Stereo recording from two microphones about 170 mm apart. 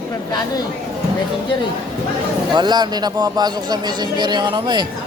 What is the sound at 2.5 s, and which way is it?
Speech, 25° right (ahead or behind).